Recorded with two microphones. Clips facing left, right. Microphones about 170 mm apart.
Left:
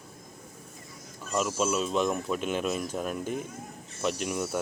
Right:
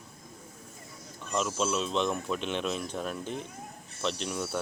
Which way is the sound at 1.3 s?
5° left (ahead or behind).